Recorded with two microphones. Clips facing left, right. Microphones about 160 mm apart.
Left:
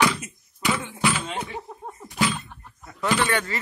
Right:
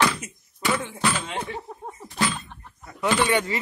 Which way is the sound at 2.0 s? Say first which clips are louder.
Left 1 dB; 10° left (ahead or behind).